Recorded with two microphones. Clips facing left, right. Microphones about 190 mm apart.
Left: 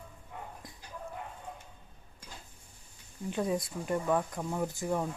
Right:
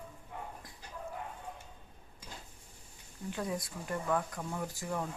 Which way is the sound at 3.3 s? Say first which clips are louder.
Left 5 dB; 20° left (ahead or behind).